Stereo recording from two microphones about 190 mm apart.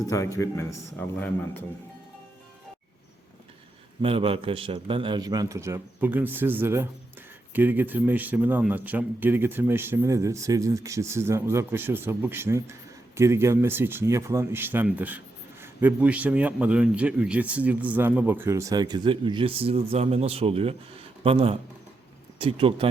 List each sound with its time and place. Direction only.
0.1 s a man's voice: 15° left (ahead or behind)
4.0 s a man's voice: 30° right (ahead or behind)